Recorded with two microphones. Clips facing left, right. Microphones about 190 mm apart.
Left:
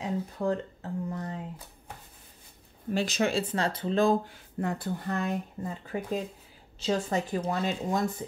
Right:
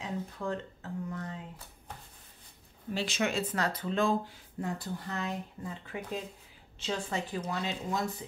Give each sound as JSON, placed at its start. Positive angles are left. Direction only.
{"t": 0.0, "sound": "a sound", "side_deg": 35}
{"t": 2.9, "sound": "speech", "side_deg": 45}
{"t": 4.3, "sound": "speech", "side_deg": 60}